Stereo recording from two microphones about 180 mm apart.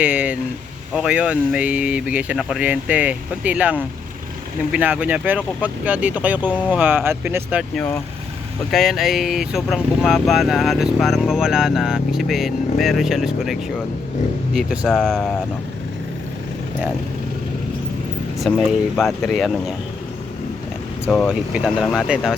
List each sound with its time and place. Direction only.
0.0 s speech: 5° right (ahead or behind)
7.8 s speech: 10° left (ahead or behind)
8.7 s speech: centre (ahead or behind)
18.5 s speech: centre (ahead or behind)
21.1 s speech: centre (ahead or behind)